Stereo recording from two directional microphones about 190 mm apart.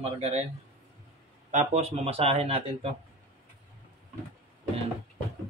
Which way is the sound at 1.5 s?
35° right (ahead or behind).